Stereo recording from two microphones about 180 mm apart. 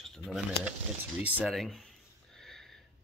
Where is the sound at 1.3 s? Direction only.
Centre (ahead or behind).